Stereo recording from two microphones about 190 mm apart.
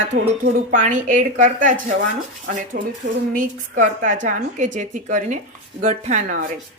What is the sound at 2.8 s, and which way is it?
A woman's voice, 50° right (ahead or behind).